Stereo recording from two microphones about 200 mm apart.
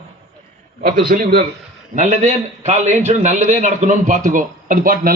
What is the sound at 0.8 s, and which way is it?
Speech, 45° right (ahead or behind).